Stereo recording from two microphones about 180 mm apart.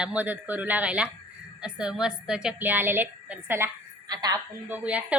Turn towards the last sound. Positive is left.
turn(degrees=-5)  # may be behind; listen again after turning